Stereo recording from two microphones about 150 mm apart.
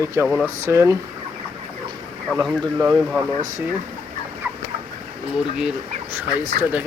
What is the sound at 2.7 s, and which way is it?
Speech, 20° right (ahead or behind).